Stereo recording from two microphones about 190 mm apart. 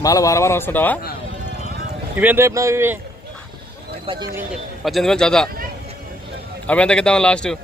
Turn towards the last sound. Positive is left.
turn(degrees=5)  # may be behind; listen again after turning